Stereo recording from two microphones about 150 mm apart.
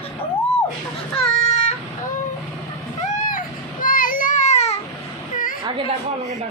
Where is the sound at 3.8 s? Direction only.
70° left (ahead or behind); by 4.8 s 50° left (ahead or behind).